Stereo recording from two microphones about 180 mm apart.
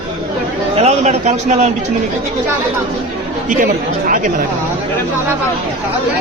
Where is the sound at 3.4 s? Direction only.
50° right (ahead or behind).